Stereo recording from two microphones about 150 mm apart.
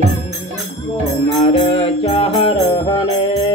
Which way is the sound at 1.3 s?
35° left (ahead or behind).